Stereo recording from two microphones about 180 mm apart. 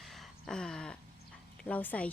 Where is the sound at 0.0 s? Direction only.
Centre (ahead or behind).